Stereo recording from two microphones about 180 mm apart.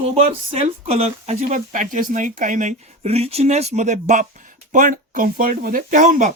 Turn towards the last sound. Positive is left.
turn(degrees=-45)  # may be behind; listen again after turning